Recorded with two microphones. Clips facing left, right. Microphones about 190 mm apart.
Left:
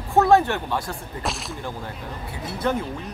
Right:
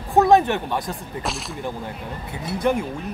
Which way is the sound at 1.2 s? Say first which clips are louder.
Even; centre (ahead or behind).